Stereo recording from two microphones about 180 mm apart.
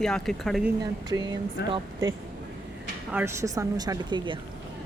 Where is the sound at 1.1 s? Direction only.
20° right (ahead or behind).